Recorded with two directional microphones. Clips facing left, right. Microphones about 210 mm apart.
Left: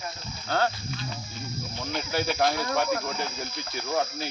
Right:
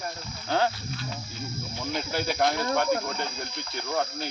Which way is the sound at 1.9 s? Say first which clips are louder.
Left 1 dB; centre (ahead or behind).